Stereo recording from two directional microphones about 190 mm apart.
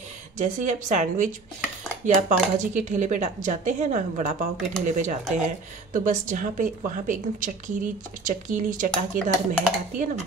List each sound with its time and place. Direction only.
0.4 s a woman's voice: 40° right (ahead or behind)